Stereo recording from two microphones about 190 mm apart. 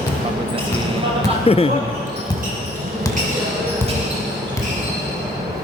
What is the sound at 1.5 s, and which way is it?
Speech, 30° left (ahead or behind).